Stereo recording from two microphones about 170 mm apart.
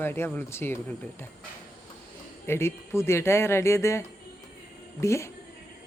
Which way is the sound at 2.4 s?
15° left (ahead or behind).